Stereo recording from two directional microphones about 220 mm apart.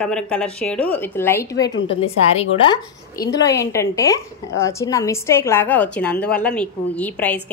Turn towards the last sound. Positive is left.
turn(degrees=5)  # may be behind; listen again after turning